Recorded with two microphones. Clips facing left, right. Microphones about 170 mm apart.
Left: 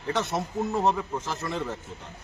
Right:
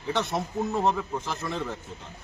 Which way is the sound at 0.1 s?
Centre (ahead or behind).